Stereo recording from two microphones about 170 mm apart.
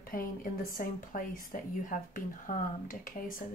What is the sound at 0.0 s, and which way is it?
Speech, 55° left (ahead or behind).